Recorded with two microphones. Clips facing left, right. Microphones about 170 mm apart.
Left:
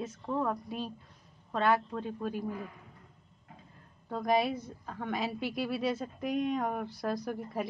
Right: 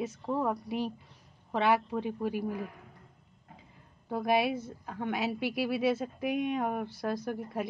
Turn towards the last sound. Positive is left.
turn(degrees=0)  # may be behind; listen again after turning